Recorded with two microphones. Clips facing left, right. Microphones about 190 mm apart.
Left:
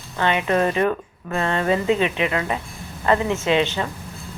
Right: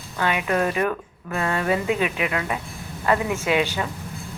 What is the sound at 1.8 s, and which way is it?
Speech, 25° left (ahead or behind).